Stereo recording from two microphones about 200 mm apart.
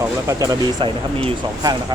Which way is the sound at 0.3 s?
15° right (ahead or behind).